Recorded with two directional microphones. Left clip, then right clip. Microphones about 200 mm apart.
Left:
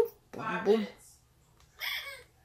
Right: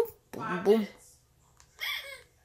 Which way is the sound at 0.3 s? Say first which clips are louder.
Right 2 dB; 20° right (ahead or behind).